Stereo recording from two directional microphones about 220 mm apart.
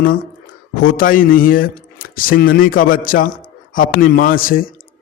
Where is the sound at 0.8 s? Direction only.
40° left (ahead or behind).